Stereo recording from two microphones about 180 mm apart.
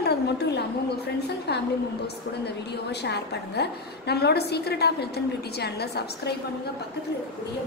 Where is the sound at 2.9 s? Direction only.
70° left (ahead or behind).